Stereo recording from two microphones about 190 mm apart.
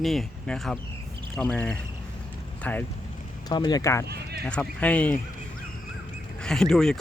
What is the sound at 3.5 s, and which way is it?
Speech, 20° left (ahead or behind).